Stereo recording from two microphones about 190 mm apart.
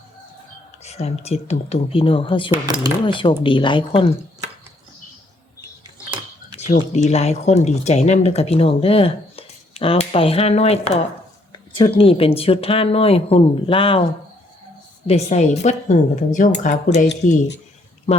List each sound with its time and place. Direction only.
0.8 s speech: 35° left (ahead or behind)
2.5 s speech: 20° right (ahead or behind)
3.1 s speech: 25° left (ahead or behind)
6.6 s speech: 35° left (ahead or behind)
15.0 s speech: 35° left (ahead or behind)